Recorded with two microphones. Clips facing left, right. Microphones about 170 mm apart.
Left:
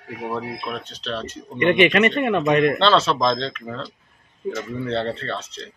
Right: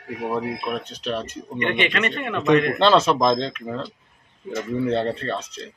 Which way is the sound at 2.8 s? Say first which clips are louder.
Right 1 dB; 15° right (ahead or behind).